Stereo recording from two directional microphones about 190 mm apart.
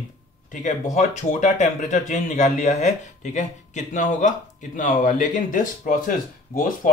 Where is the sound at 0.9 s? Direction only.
40° left (ahead or behind).